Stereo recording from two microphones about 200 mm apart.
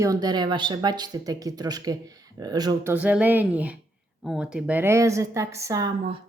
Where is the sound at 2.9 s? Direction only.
5° right (ahead or behind).